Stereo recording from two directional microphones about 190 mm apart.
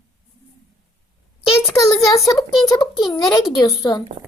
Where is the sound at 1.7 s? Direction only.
15° left (ahead or behind).